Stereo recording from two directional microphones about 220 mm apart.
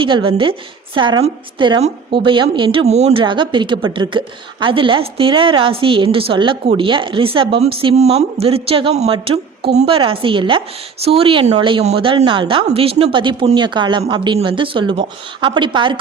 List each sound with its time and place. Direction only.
0.0 s a woman's voice: 25° right (ahead or behind)